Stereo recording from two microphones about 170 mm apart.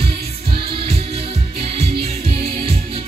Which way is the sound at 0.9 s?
35° right (ahead or behind).